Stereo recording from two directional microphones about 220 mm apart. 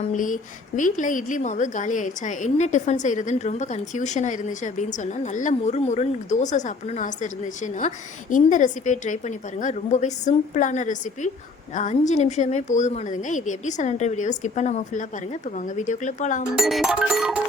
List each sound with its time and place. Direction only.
0.1 s a woman's voice: 35° left (ahead or behind)
16.6 s music: centre (ahead or behind)